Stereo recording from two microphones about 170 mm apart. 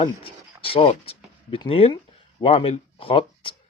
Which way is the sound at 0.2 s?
35° left (ahead or behind).